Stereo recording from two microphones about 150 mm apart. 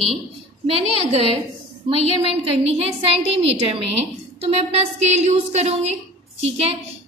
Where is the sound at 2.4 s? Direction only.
40° right (ahead or behind).